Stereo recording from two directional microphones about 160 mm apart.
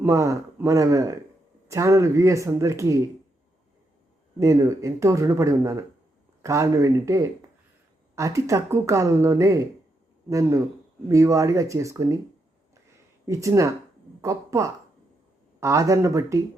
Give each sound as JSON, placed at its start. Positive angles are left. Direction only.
{"t": 0.0, "sound": "speech", "side_deg": -20}
{"t": 4.4, "sound": "speech", "side_deg": -20}
{"t": 13.2, "sound": "a woman's voice", "side_deg": -20}